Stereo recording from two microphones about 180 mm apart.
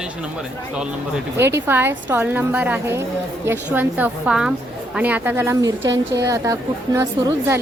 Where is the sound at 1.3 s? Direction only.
15° right (ahead or behind).